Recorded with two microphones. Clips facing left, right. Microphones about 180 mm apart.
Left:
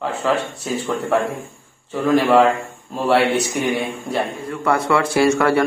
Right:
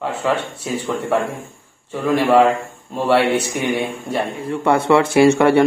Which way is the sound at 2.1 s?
5° right (ahead or behind).